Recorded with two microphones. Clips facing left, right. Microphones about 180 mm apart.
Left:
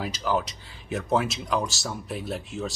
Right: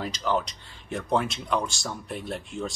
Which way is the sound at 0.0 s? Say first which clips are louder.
Even; 5° left (ahead or behind).